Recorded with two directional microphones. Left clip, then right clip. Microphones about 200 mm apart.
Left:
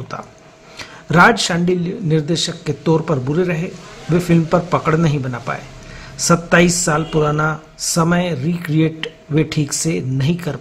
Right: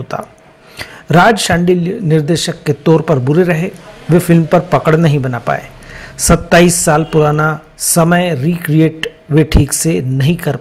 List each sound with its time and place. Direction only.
0.1 s speech: 25° right (ahead or behind)